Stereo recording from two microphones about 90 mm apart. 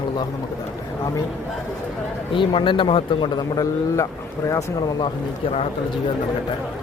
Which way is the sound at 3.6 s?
35° left (ahead or behind).